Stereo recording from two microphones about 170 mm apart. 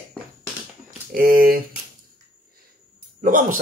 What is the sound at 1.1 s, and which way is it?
Speech, 60° right (ahead or behind).